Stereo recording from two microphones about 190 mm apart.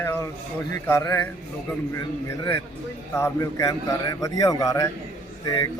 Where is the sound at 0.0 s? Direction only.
15° left (ahead or behind).